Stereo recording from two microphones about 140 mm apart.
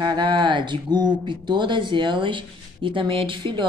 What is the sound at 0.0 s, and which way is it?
Speech, 30° right (ahead or behind).